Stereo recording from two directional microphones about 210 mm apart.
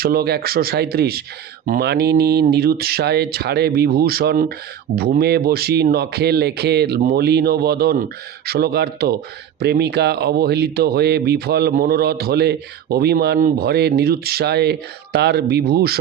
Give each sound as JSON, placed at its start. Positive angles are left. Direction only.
{"t": 0.0, "sound": "speech", "side_deg": -45}